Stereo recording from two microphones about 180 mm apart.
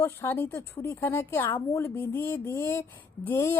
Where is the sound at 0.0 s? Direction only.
15° left (ahead or behind).